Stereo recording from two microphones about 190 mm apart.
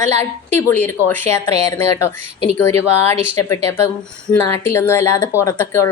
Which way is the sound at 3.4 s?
15° left (ahead or behind).